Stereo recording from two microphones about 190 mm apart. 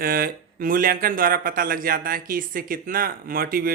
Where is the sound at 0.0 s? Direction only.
50° right (ahead or behind).